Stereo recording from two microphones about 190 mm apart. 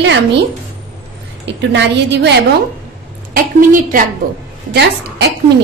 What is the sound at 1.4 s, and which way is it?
Speech, 65° right (ahead or behind).